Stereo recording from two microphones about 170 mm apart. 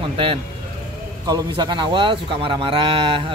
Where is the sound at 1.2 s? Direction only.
25° right (ahead or behind).